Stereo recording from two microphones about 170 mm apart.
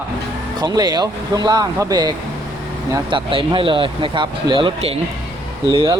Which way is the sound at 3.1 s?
30° right (ahead or behind).